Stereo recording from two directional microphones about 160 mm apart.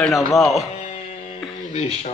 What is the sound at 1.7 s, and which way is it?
Speech, 40° left (ahead or behind).